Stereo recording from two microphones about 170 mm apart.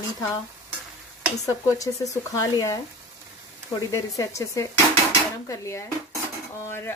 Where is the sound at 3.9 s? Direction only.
20° left (ahead or behind).